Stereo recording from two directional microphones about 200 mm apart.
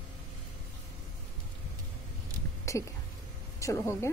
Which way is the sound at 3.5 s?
15° left (ahead or behind).